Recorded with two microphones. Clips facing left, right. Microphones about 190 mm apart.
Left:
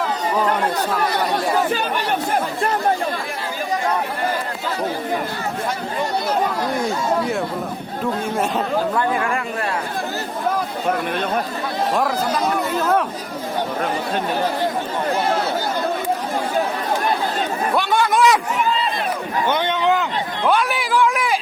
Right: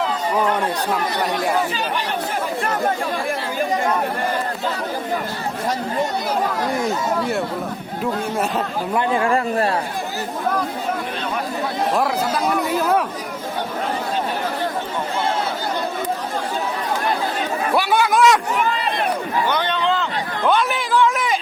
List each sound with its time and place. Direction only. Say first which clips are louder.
8.9 s speech: right 2 dB; 20° right (ahead or behind)
11.9 s speech: left 1 dB; 5° right (ahead or behind)
17.7 s speech: right 1 dB; 5° right (ahead or behind)
19.5 s a sound: left 4 dB; 20° left (ahead or behind)
20.5 s a man's voice: even; 10° left (ahead or behind)